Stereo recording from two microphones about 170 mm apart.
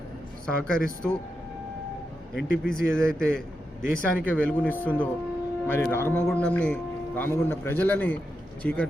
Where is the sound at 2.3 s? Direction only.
5° left (ahead or behind).